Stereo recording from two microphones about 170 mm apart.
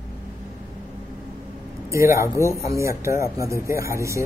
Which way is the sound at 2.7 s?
15° right (ahead or behind).